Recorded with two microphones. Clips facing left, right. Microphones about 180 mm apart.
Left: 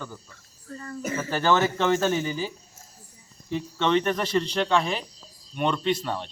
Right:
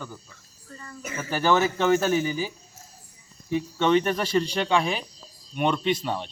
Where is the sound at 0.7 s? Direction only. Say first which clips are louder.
Left 6 dB; 40° left (ahead or behind).